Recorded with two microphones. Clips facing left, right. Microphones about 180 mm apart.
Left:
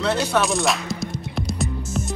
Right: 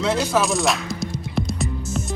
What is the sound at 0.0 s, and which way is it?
Music, centre (ahead or behind).